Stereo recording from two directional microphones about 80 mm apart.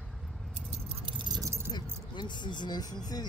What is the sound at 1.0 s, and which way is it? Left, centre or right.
Keys jangling, right.